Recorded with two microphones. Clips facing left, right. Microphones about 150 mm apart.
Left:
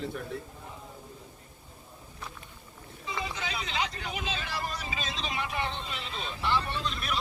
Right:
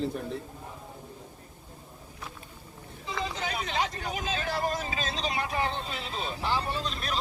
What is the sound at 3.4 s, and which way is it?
Vehicle, 45° right (ahead or behind).